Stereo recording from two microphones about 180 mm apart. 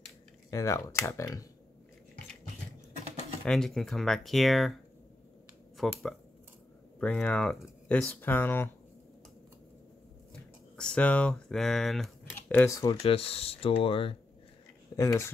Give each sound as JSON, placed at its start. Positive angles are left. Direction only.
{"t": 0.5, "sound": "speech", "side_deg": 15}
{"t": 3.4, "sound": "speech", "side_deg": 0}
{"t": 5.8, "sound": "speech", "side_deg": 0}
{"t": 7.0, "sound": "speech", "side_deg": 5}
{"t": 10.3, "sound": "speech", "side_deg": 5}
{"t": 13.0, "sound": "speech", "side_deg": 30}
{"t": 15.0, "sound": "speech", "side_deg": 15}